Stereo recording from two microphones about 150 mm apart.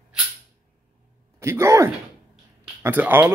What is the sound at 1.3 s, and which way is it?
Speech, 15° right (ahead or behind).